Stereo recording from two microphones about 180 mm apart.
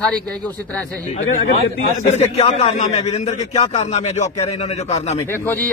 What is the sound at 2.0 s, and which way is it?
A man's voice, 40° left (ahead or behind).